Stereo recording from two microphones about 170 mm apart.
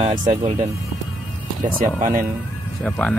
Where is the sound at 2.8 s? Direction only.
5° left (ahead or behind).